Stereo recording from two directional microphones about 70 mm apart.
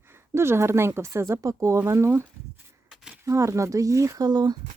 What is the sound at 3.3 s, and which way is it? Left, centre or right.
Speech, right.